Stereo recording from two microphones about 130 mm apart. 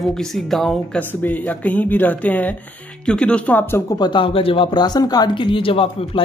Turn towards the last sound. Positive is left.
turn(degrees=45)  # may be behind; listen again after turning